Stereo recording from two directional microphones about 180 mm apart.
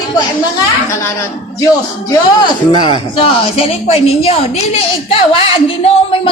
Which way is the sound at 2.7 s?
25° left (ahead or behind).